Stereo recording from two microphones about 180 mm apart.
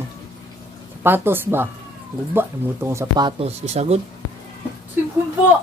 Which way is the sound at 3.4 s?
40° right (ahead or behind).